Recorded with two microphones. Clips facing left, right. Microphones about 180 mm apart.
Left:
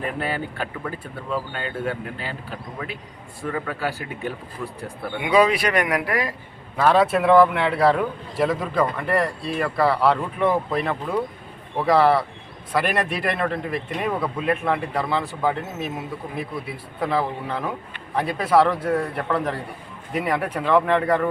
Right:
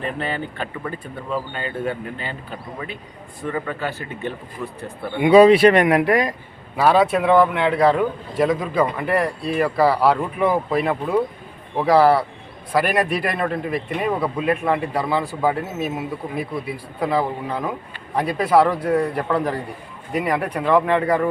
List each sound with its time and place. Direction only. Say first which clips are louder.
0.0 s a man's voice: right 1 dB; 5° left (ahead or behind)
5.2 s speech: right 8 dB; 30° right (ahead or behind)
6.7 s a man's voice: right 2 dB; centre (ahead or behind)